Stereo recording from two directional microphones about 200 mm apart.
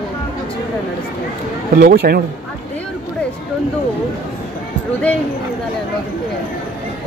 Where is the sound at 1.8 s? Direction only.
50° right (ahead or behind).